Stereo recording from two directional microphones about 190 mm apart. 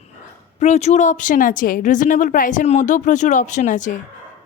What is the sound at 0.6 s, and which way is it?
Speech, 35° left (ahead or behind).